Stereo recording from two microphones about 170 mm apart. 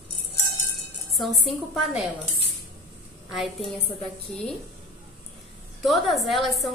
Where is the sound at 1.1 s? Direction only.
Centre (ahead or behind).